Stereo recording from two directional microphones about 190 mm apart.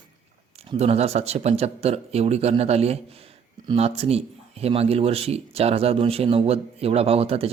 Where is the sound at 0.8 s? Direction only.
35° right (ahead or behind).